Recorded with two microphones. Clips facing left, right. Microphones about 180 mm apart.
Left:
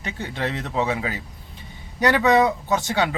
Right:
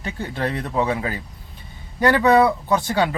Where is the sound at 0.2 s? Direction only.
45° right (ahead or behind).